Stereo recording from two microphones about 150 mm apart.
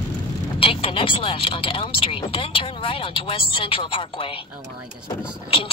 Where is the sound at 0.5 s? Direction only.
35° left (ahead or behind).